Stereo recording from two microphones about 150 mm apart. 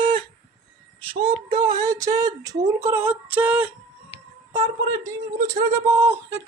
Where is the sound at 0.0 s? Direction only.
35° right (ahead or behind).